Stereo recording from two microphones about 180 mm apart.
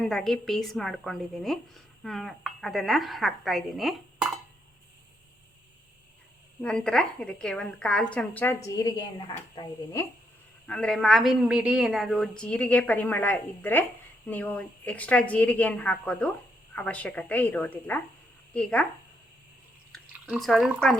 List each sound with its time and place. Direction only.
0.0 s a woman's voice: centre (ahead or behind)
6.6 s a woman's voice: 5° left (ahead or behind)
10.7 s a woman's voice: 5° left (ahead or behind)
20.2 s a woman's voice: 5° right (ahead or behind)